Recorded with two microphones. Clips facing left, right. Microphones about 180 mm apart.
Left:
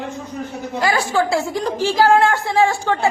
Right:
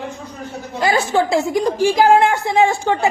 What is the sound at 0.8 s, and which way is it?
A woman's voice, 20° right (ahead or behind).